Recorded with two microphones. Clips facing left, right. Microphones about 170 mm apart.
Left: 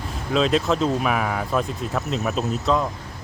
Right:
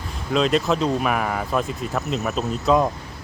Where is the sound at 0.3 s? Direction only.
Centre (ahead or behind).